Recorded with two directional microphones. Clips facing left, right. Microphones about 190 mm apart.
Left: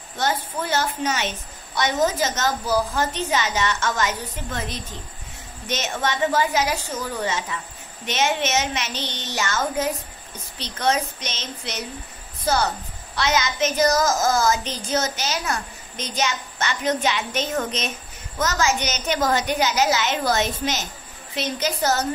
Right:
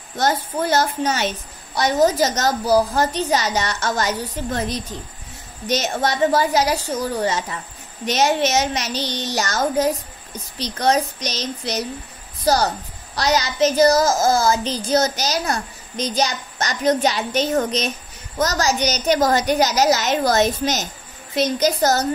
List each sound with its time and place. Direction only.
0.2 s a child's voice: 40° right (ahead or behind)